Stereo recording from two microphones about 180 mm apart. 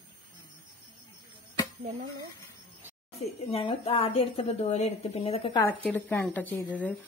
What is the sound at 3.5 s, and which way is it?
A woman's voice, 35° left (ahead or behind).